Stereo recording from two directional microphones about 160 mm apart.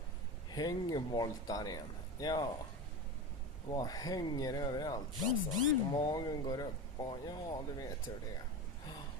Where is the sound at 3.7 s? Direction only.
25° left (ahead or behind).